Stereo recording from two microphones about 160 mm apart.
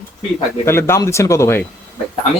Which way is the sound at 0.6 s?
15° left (ahead or behind).